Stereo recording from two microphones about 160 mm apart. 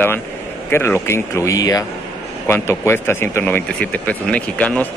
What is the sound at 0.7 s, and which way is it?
Speech, 15° left (ahead or behind).